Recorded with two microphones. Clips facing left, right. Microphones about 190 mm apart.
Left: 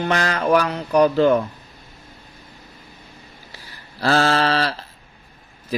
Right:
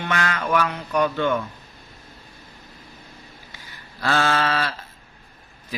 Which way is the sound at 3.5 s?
35° left (ahead or behind).